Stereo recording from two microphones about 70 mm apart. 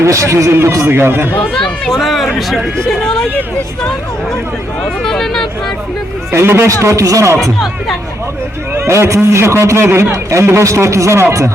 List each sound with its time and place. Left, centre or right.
0.0 s a man's voice: right
0.9 s speech: right
1.5 s speech: centre
5.0 s speech: centre
6.3 s speech: right
6.8 s a man's voice: right
8.8 s a man's voice: right